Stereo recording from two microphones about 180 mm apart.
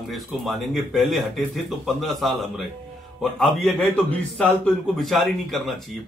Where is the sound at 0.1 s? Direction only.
Centre (ahead or behind).